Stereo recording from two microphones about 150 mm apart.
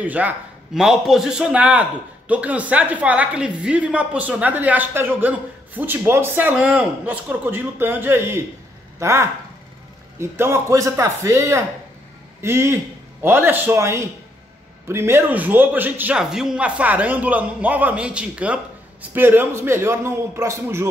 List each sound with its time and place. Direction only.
0.0 s a man's voice: 10° right (ahead or behind)